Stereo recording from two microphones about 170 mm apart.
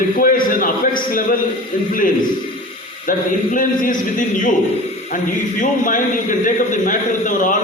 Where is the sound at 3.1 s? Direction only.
55° left (ahead or behind).